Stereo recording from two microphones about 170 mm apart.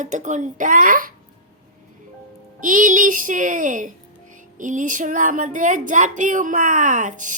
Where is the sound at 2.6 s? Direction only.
50° right (ahead or behind).